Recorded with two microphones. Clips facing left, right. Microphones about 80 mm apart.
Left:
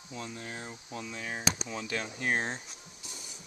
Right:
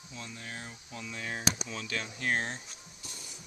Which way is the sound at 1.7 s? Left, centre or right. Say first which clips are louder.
Left 2 dB; left.